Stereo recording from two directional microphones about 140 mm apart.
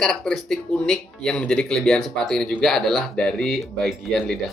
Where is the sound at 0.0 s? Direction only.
5° left (ahead or behind).